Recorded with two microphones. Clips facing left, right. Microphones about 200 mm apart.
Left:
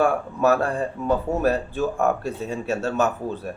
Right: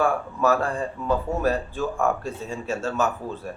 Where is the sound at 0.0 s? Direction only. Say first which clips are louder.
Left 2 dB; 65° left (ahead or behind).